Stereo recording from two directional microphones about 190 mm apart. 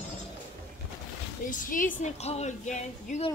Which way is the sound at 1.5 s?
45° left (ahead or behind).